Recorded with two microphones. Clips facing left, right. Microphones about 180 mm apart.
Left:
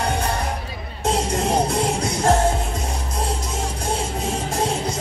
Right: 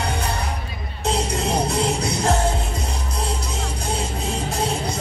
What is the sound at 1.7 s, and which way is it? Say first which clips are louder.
Music: even; 50° left (ahead or behind).